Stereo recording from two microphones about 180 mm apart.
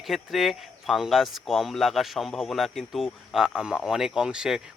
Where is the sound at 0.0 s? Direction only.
Centre (ahead or behind).